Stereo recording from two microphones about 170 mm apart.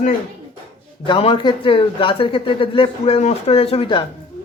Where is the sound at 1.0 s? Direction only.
30° left (ahead or behind).